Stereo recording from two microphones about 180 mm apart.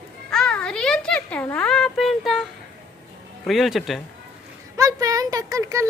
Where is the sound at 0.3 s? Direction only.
5° left (ahead or behind).